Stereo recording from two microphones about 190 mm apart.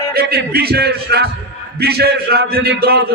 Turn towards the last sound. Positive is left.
turn(degrees=-60)  # may be behind; listen again after turning